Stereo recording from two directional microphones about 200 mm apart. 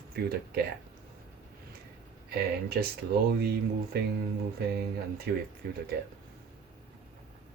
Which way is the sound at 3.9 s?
50° right (ahead or behind).